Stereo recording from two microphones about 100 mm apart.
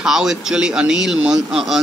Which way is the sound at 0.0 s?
5° right (ahead or behind).